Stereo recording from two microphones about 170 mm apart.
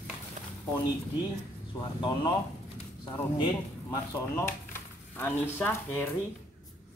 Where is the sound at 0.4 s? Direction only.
45° right (ahead or behind).